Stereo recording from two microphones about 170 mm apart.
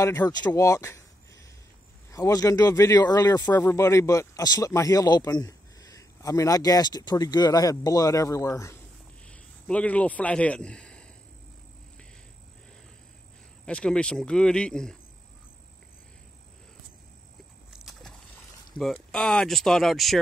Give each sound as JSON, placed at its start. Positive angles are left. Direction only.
{"t": 0.0, "sound": "speech", "side_deg": 10}
{"t": 0.3, "sound": "a sound", "side_deg": 20}
{"t": 2.0, "sound": "speech", "side_deg": 20}
{"t": 9.2, "sound": "a man's voice", "side_deg": 5}
{"t": 13.7, "sound": "speech", "side_deg": 5}
{"t": 17.7, "sound": "vehicle", "side_deg": 0}
{"t": 18.8, "sound": "speech", "side_deg": 0}